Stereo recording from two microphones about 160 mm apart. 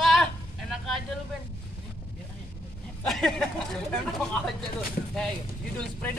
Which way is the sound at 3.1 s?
5° left (ahead or behind).